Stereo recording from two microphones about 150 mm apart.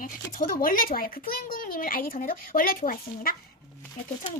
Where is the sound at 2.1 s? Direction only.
55° left (ahead or behind).